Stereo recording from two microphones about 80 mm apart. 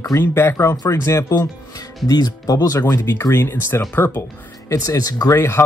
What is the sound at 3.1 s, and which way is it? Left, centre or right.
Speech, left.